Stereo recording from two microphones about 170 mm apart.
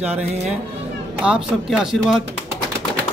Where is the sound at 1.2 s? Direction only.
5° right (ahead or behind).